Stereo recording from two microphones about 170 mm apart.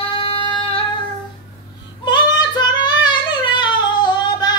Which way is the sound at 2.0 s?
25° left (ahead or behind).